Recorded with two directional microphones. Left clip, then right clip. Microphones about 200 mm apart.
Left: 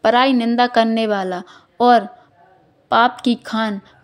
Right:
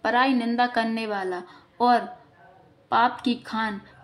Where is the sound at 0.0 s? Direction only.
45° left (ahead or behind).